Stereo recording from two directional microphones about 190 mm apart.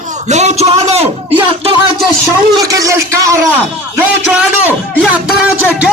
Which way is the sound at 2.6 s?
15° right (ahead or behind).